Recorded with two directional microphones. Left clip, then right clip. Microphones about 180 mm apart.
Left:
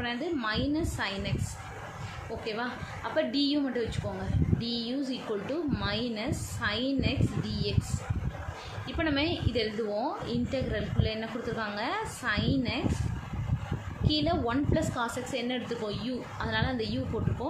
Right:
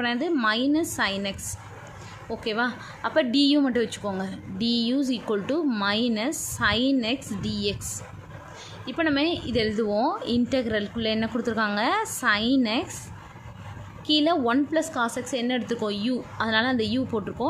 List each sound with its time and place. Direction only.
0.0 s a woman's voice: 50° right (ahead or behind)
2.4 s a woman's voice: 50° right (ahead or behind)
8.8 s a woman's voice: 45° right (ahead or behind)
14.0 s a woman's voice: 50° right (ahead or behind)